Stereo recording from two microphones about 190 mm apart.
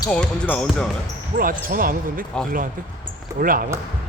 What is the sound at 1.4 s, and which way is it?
Speech, 45° right (ahead or behind).